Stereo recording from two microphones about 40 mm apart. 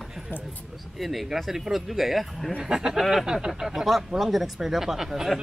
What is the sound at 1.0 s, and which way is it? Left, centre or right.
Speech, centre.